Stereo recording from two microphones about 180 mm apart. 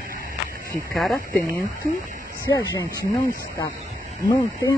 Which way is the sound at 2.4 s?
20° left (ahead or behind).